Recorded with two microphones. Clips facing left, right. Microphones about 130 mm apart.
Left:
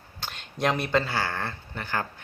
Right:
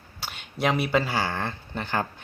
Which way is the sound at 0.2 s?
5° right (ahead or behind).